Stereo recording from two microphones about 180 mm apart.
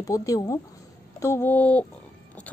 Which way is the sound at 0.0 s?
20° left (ahead or behind).